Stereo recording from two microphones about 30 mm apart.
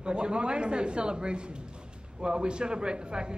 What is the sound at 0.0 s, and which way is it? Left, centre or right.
A man's voice, right.